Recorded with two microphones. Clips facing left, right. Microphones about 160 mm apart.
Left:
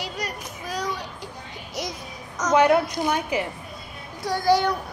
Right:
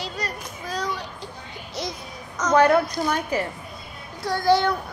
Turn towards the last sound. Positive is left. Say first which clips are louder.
# right 1 dB
turn(degrees=10)  # may be behind; listen again after turning